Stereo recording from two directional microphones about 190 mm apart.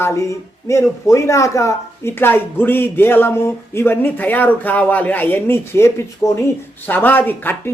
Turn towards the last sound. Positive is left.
turn(degrees=10)  # may be behind; listen again after turning